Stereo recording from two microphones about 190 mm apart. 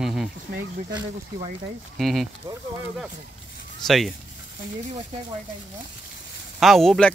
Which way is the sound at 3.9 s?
Centre (ahead or behind).